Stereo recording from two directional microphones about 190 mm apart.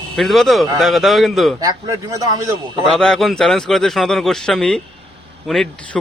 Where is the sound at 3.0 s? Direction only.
Centre (ahead or behind).